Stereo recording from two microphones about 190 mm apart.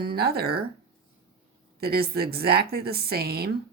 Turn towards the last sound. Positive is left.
turn(degrees=-55)  # may be behind; listen again after turning